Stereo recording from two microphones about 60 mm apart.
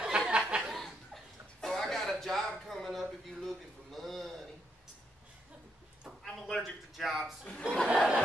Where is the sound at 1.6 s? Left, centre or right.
Centre.